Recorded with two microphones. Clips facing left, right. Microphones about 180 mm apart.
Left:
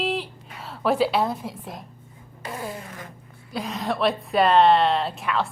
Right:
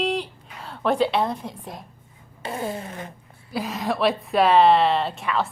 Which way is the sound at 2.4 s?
25° right (ahead or behind).